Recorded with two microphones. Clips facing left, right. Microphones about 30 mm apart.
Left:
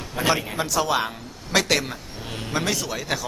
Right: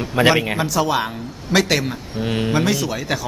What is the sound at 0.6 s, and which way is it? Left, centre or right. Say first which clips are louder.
A man's voice: right 3 dB; centre.